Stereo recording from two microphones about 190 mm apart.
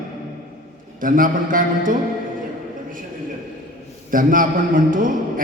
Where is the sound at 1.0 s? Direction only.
45° right (ahead or behind).